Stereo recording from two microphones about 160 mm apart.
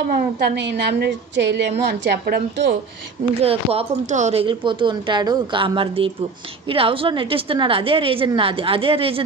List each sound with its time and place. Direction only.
0.1 s a woman's voice: 80° right
3.3 s speech: 40° right (ahead or behind)